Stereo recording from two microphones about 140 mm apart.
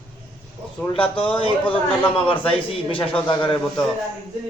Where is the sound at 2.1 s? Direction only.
40° left (ahead or behind).